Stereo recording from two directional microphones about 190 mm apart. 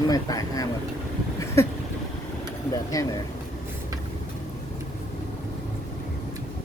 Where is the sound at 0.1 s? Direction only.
20° left (ahead or behind).